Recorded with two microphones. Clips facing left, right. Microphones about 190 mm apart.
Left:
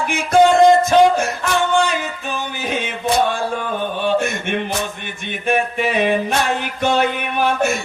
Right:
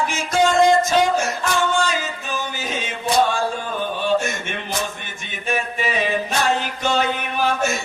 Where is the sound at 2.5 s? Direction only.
60° left (ahead or behind).